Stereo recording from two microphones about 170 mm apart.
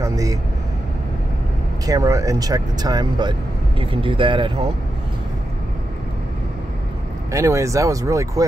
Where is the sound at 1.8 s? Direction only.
20° right (ahead or behind).